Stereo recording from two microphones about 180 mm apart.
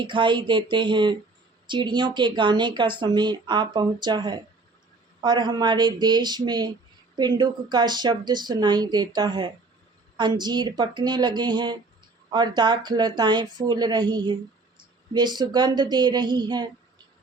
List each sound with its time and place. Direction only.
0.0 s speech: 25° right (ahead or behind)